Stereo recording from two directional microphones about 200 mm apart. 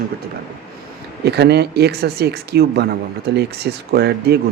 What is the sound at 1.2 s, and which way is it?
Speech, 55° right (ahead or behind).